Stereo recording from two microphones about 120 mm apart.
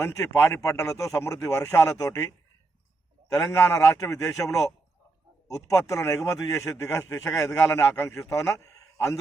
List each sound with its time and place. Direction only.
0.0 s a man's voice: 20° left (ahead or behind)
3.3 s a man's voice: 20° left (ahead or behind)
5.5 s a man's voice: 25° left (ahead or behind)